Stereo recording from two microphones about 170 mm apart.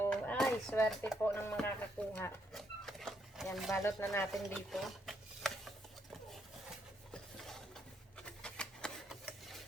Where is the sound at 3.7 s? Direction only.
15° left (ahead or behind).